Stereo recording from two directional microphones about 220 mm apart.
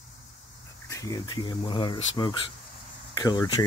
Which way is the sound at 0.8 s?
15° left (ahead or behind).